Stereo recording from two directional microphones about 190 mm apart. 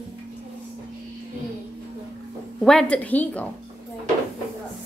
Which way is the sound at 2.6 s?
5° left (ahead or behind).